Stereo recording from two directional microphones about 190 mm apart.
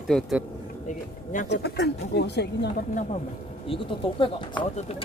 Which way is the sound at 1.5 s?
60° left (ahead or behind).